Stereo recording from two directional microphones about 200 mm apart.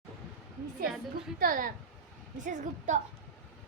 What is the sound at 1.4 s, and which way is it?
A woman's voice, 45° right (ahead or behind).